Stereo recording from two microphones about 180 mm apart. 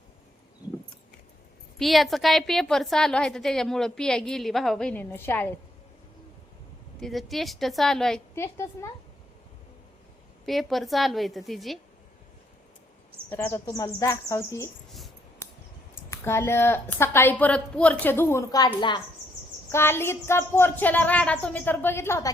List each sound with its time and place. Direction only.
1.8 s a woman's voice: centre (ahead or behind)
7.0 s a woman's voice: centre (ahead or behind)
8.4 s a woman's voice: 15° left (ahead or behind)
10.4 s a woman's voice: centre (ahead or behind)
13.3 s a woman's voice: 10° left (ahead or behind)
16.0 s a woman's voice: 15° left (ahead or behind)
19.7 s a woman's voice: 15° left (ahead or behind)